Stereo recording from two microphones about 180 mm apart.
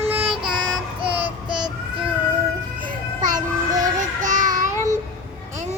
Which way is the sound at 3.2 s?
45° right (ahead or behind).